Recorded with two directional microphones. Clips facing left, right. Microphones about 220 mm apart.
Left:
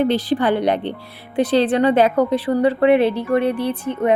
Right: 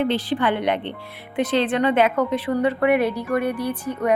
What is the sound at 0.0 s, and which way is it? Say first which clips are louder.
A woman's voice: left 4 dB; 40° left (ahead or behind).